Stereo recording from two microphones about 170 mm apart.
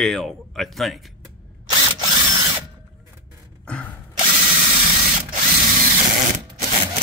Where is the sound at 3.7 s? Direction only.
5° left (ahead or behind).